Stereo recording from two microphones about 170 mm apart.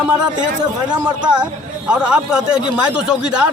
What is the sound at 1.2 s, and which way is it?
Speech, 5° right (ahead or behind).